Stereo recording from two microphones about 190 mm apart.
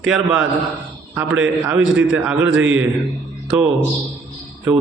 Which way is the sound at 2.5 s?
90° right.